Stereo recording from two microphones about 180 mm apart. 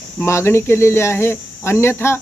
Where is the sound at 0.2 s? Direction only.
15° left (ahead or behind).